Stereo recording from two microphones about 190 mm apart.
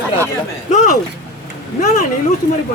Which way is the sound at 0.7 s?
40° left (ahead or behind).